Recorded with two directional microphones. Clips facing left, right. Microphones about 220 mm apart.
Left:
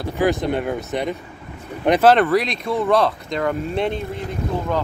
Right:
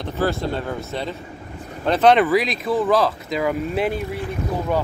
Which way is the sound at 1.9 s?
5° left (ahead or behind).